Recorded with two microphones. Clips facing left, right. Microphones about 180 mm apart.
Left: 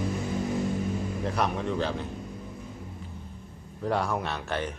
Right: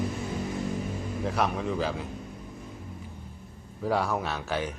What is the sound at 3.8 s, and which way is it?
Speech, centre (ahead or behind).